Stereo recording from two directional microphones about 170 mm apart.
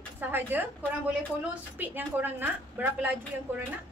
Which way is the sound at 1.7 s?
10° right (ahead or behind).